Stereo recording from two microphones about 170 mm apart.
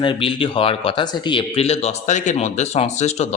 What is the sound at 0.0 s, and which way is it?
Speech, 30° left (ahead or behind).